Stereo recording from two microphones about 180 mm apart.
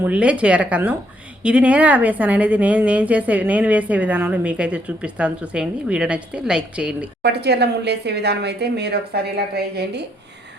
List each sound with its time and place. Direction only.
0.0 s a woman's voice: 5° right (ahead or behind)
7.2 s speech: 65° right (ahead or behind)